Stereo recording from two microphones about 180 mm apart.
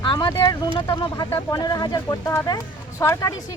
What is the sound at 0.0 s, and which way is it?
Speech, 25° left (ahead or behind).